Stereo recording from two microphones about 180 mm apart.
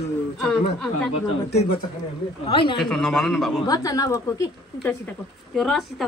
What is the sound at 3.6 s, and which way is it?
A woman's voice, 20° left (ahead or behind).